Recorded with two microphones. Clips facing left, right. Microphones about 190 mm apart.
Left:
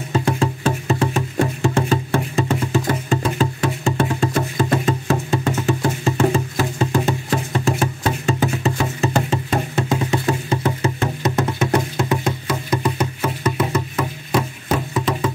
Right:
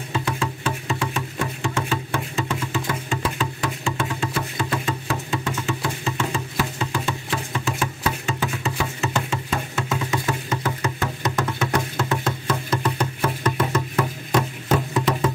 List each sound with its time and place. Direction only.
0.1 s music: 40° left (ahead or behind); by 15.3 s centre (ahead or behind)